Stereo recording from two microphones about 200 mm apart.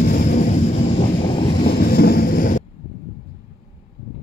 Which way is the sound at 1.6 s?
50° left (ahead or behind).